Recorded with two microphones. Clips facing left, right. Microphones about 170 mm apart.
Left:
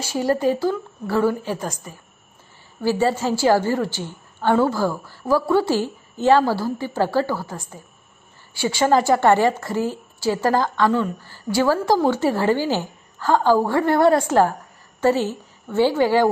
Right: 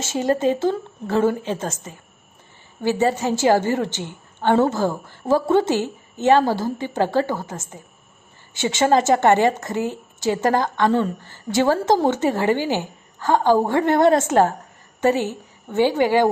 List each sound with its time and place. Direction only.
0.0 s a woman's voice: 20° right (ahead or behind)